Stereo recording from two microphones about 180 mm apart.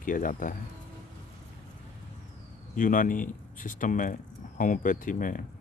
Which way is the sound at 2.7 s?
50° left (ahead or behind).